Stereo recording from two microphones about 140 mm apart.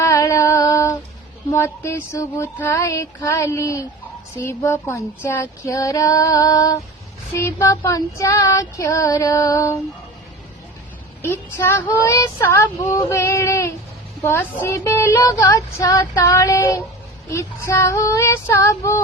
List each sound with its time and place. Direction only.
0.0 s a sound: 20° left (ahead or behind)
2.6 s child singing: 20° left (ahead or behind)
11.2 s child singing: 15° left (ahead or behind)